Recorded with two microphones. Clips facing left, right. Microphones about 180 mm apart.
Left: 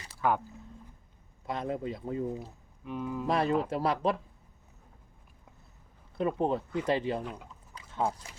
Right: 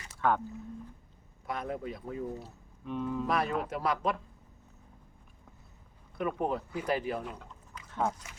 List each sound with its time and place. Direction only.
0.2 s speech: 5° left (ahead or behind)
1.5 s speech: 25° left (ahead or behind)
2.4 s speech: 5° left (ahead or behind)
3.2 s speech: 30° left (ahead or behind)
6.1 s speech: 25° left (ahead or behind)